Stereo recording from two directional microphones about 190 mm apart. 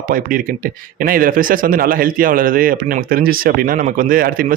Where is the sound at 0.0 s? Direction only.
45° right (ahead or behind).